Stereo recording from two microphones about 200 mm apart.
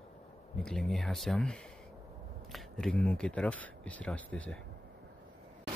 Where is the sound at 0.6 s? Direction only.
5° left (ahead or behind).